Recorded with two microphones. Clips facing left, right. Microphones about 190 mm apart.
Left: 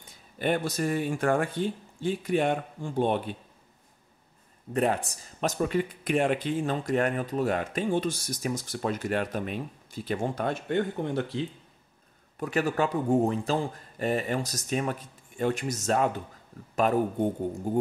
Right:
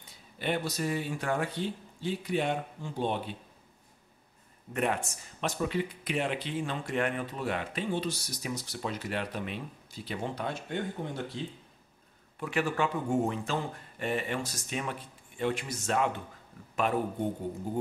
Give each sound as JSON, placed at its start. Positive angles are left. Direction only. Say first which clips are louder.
{"t": 0.4, "sound": "speech", "louder": "left 4 dB", "side_deg": 50}
{"t": 4.7, "sound": "speech", "louder": "left 4 dB", "side_deg": 35}
{"t": 12.4, "sound": "a man's voice", "louder": "left 3 dB", "side_deg": 40}